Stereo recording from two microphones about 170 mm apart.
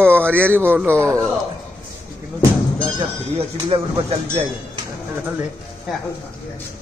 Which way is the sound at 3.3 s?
35° right (ahead or behind).